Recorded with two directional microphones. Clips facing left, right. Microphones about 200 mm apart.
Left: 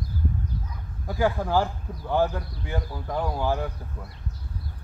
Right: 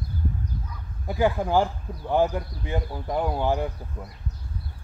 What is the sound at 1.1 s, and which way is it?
Speech, 20° right (ahead or behind).